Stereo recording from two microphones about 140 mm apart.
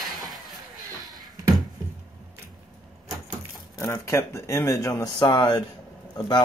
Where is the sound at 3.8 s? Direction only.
20° left (ahead or behind).